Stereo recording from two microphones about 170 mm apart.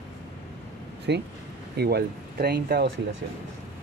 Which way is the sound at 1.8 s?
70° right (ahead or behind).